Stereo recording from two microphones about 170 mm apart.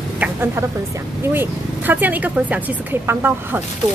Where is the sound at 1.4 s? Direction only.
10° right (ahead or behind).